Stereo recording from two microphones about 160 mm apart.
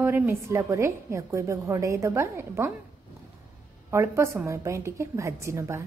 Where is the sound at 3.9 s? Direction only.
15° right (ahead or behind).